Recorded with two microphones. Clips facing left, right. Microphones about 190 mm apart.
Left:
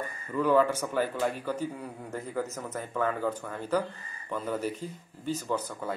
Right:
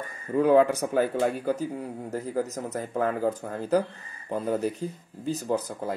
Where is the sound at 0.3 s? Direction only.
40° right (ahead or behind).